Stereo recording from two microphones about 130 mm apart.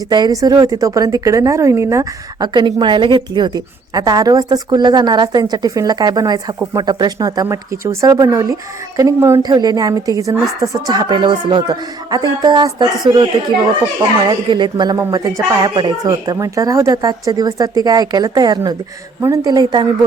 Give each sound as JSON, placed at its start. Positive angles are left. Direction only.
{"t": 0.1, "sound": "a woman's voice", "side_deg": -30}